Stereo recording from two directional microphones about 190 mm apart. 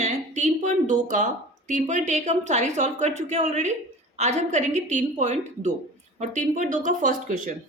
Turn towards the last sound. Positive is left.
turn(degrees=-45)  # may be behind; listen again after turning